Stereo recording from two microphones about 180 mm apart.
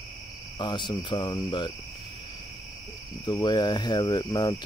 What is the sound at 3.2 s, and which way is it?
Cricket, 25° left (ahead or behind).